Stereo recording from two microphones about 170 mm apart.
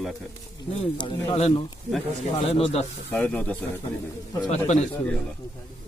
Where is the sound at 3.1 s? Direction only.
10° left (ahead or behind).